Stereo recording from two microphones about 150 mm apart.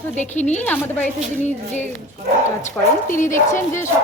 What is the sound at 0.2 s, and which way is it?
Speech, 50° left (ahead or behind).